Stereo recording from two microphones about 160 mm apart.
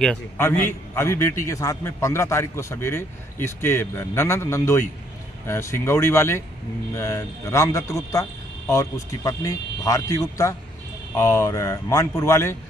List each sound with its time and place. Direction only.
0.4 s a man's voice: 15° left (ahead or behind)